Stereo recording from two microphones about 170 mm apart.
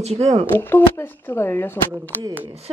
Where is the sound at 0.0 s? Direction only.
40° right (ahead or behind).